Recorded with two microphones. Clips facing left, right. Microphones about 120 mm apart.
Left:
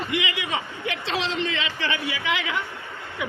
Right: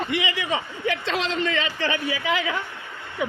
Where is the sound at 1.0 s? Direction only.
45° right (ahead or behind).